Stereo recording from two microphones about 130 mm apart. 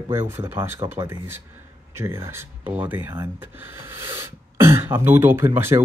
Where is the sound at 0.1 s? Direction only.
20° right (ahead or behind).